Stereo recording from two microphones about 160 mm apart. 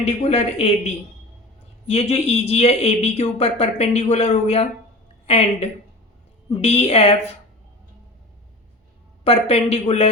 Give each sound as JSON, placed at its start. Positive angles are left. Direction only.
{"t": 0.0, "sound": "speech", "side_deg": 40}
{"t": 1.9, "sound": "a woman's voice", "side_deg": 40}
{"t": 9.2, "sound": "speech", "side_deg": 40}